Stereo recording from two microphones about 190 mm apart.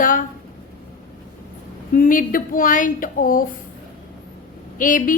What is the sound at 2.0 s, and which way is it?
A woman's voice, 45° left (ahead or behind).